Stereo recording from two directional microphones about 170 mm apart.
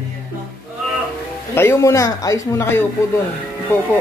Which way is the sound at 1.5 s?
15° left (ahead or behind).